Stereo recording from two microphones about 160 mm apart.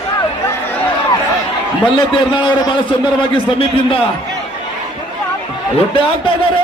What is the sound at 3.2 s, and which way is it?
Speech, 35° left (ahead or behind).